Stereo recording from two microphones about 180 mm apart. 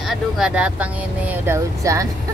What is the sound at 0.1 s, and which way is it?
Speech, 5° right (ahead or behind).